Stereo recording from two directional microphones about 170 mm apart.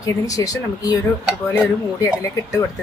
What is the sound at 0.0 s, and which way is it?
Speech, 20° left (ahead or behind).